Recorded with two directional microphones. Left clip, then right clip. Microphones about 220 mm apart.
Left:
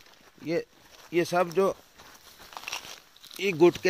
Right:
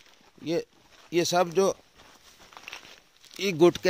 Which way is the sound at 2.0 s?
40° left (ahead or behind).